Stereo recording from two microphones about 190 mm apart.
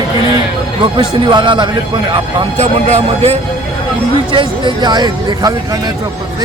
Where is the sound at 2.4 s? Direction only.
35° right (ahead or behind).